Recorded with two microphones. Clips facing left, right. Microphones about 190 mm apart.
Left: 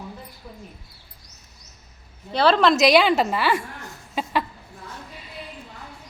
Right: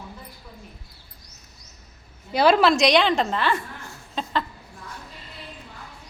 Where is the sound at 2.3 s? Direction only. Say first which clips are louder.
Even; 10° right (ahead or behind); by 3.6 s 10° left (ahead or behind).